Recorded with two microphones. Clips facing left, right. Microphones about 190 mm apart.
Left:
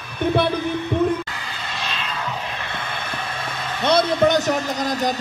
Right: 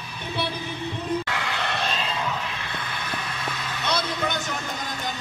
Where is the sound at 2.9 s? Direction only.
55° left (ahead or behind).